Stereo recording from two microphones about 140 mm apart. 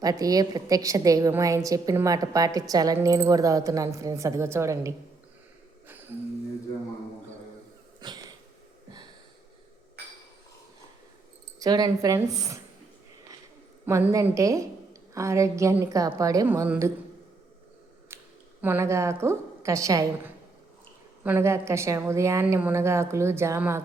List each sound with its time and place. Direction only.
0.0 s a woman's voice: 25° right (ahead or behind)
5.9 s a sound: 15° right (ahead or behind)
8.0 s cat: 30° right (ahead or behind)
11.6 s a woman's voice: 25° right (ahead or behind)
13.8 s a woman's voice: 20° right (ahead or behind)
18.1 s a sound: 15° right (ahead or behind)
18.6 s a woman's voice: 20° right (ahead or behind)